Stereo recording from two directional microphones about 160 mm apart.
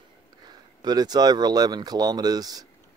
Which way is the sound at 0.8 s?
25° right (ahead or behind).